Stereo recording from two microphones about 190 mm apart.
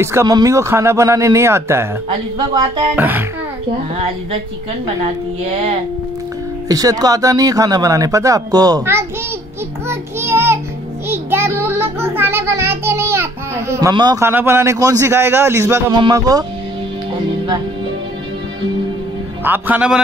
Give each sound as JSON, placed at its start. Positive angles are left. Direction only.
{"t": 0.0, "sound": "a child's voice", "side_deg": -15}
{"t": 3.0, "sound": "a child's voice", "side_deg": -10}
{"t": 5.0, "sound": "speech", "side_deg": -30}
{"t": 6.7, "sound": "speech", "side_deg": -20}
{"t": 9.8, "sound": "child singing", "side_deg": -15}
{"t": 12.1, "sound": "a child's voice", "side_deg": -10}
{"t": 19.4, "sound": "a child's voice", "side_deg": -10}